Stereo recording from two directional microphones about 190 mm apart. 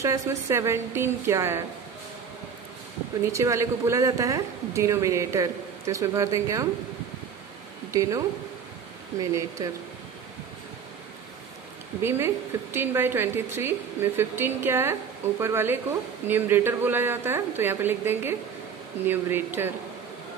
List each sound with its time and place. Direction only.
0.0 s a woman's voice: 15° right (ahead or behind)
3.3 s a woman's voice: 15° right (ahead or behind)
7.9 s speech: 15° right (ahead or behind)
9.2 s a woman's voice: 15° right (ahead or behind)
12.0 s a woman's voice: 10° right (ahead or behind)